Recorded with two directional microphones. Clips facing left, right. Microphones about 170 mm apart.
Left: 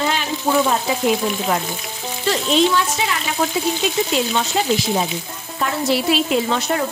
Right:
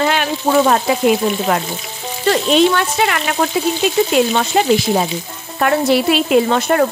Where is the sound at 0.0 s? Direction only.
65° right (ahead or behind).